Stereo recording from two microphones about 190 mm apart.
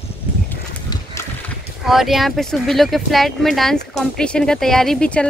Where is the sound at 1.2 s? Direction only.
15° left (ahead or behind).